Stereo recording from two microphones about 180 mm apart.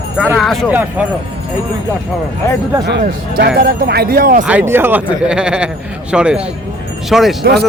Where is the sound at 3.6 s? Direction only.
60° right (ahead or behind).